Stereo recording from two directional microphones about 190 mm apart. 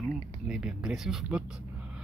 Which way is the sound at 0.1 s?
5° right (ahead or behind).